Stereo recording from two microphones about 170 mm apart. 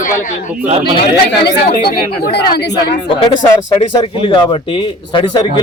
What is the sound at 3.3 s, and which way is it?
Speech, 30° left (ahead or behind).